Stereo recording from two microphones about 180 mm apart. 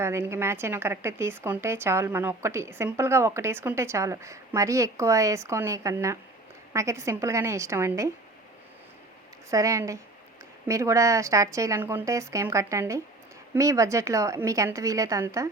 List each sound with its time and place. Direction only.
0.0 s a woman's voice: 15° right (ahead or behind)
9.5 s a woman's voice: 15° right (ahead or behind)